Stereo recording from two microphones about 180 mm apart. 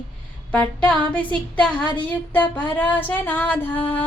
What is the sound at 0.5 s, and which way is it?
Female singing, 5° left (ahead or behind).